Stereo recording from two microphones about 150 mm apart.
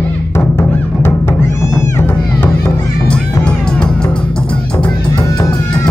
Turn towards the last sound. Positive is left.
turn(degrees=30)  # may be behind; listen again after turning